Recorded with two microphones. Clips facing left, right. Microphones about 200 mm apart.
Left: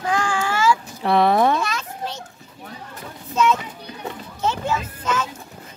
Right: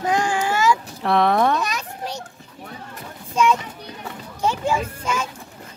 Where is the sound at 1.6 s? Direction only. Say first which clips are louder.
Even; 15° right (ahead or behind).